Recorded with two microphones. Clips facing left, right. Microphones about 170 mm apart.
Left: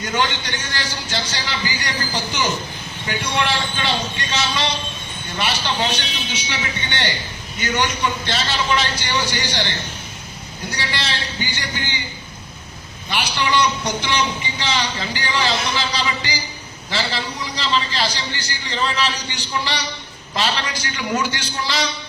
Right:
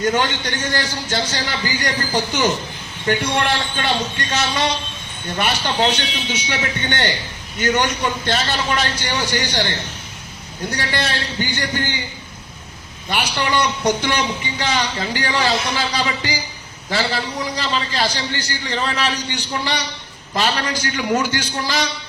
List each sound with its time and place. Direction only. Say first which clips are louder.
0.0 s a man's voice: right 3 dB; 50° right (ahead or behind)
10.8 s a man's voice: right 3 dB; 50° right (ahead or behind)
13.1 s a man's voice: right 1 dB; 50° right (ahead or behind)